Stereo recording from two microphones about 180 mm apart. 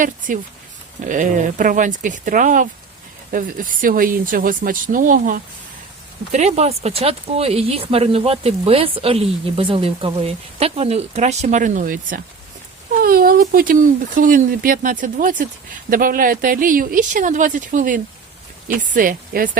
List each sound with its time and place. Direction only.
0.3 s speech: 50° right (ahead or behind)
6.3 s speech: 35° right (ahead or behind)